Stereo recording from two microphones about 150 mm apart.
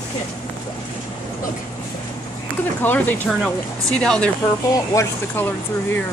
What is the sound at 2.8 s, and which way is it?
Speech, 10° left (ahead or behind).